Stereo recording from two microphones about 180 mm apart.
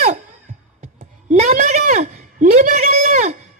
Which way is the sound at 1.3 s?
40° right (ahead or behind).